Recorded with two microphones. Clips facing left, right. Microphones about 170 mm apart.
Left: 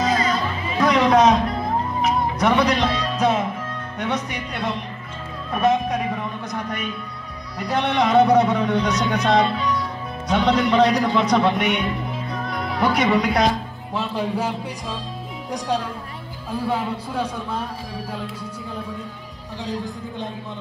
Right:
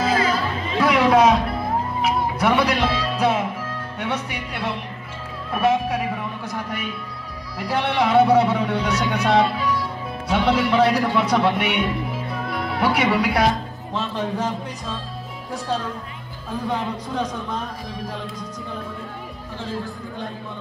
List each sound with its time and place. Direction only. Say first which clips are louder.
0.0 s music: even; 5° right (ahead or behind)
4.0 s a man's voice: left 2 dB; 10° right (ahead or behind)
12.3 s music: even; 5° right (ahead or behind)
13.9 s a man's voice: left 1 dB; 10° left (ahead or behind)
19.6 s a man's voice: left 2 dB; 15° left (ahead or behind)